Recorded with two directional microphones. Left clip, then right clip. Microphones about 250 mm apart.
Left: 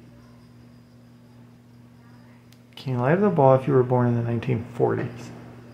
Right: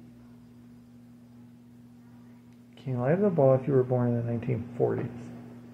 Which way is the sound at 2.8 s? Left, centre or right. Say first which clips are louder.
Left 5 dB; centre.